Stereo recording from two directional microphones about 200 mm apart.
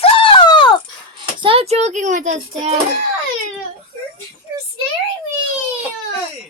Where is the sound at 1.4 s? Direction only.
30° right (ahead or behind).